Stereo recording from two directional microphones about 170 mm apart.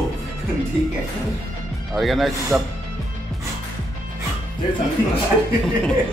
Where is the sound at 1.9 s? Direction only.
Centre (ahead or behind).